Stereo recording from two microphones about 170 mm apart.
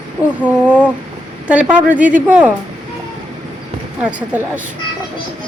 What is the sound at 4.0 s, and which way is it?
Speech, 10° right (ahead or behind).